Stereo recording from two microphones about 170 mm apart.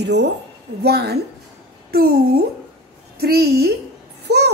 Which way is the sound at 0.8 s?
70° right (ahead or behind).